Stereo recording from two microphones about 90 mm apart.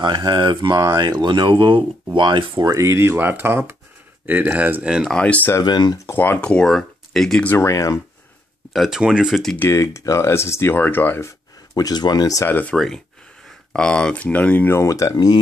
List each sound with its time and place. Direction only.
0.0 s speech: 55° right (ahead or behind)
2.7 s speech: 30° right (ahead or behind)
5.1 s speech: 15° left (ahead or behind)
5.6 s speech: 50° left (ahead or behind)
6.0 s speech: 20° left (ahead or behind)
6.4 s speech: 10° left (ahead or behind)
7.4 s speech: 30° left (ahead or behind)
8.7 s speech: 5° right (ahead or behind)
9.7 s speech: 35° left (ahead or behind)
11.7 s speech: 45° left (ahead or behind)
12.4 s speech: 20° left (ahead or behind)
12.7 s speech: 5° left (ahead or behind)
14.8 s speech: 35° left (ahead or behind)